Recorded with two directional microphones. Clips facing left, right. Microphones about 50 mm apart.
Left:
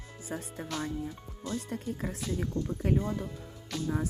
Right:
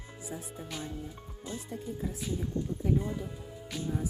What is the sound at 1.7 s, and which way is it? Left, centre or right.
Speech, left.